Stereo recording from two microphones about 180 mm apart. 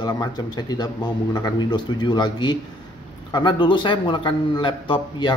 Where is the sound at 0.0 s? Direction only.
20° left (ahead or behind).